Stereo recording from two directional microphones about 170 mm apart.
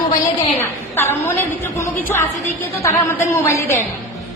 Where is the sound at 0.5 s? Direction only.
15° left (ahead or behind).